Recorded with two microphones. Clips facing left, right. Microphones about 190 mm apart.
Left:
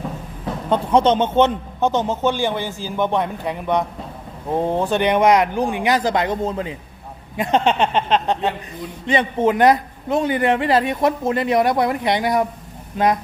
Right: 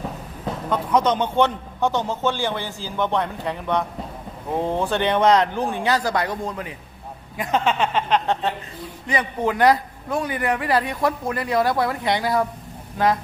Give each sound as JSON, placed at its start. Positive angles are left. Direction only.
{"t": 0.7, "sound": "a man's voice", "side_deg": 25}